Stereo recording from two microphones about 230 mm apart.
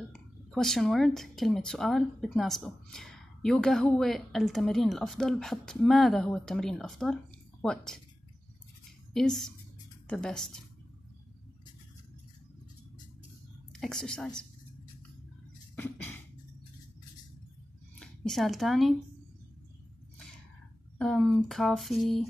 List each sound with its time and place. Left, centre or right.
0.1 s a woman's voice: centre
9.1 s a woman's voice: centre
13.7 s a woman's voice: centre
15.7 s cough: centre
17.9 s speech: centre
21.0 s a woman's voice: centre